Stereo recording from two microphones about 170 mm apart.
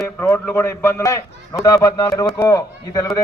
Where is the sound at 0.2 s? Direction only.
15° left (ahead or behind).